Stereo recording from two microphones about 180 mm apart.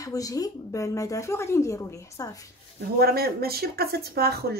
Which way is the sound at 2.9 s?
60° right (ahead or behind).